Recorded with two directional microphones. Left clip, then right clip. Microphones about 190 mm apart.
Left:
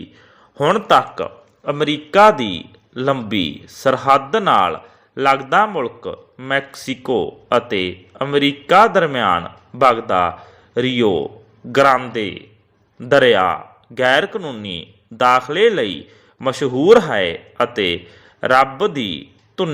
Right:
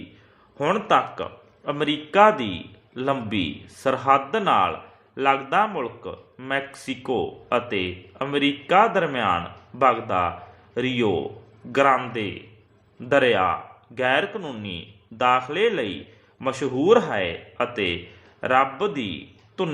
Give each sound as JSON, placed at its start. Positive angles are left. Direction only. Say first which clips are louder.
{"t": 0.6, "sound": "a man's voice", "louder": "left 7 dB", "side_deg": 35}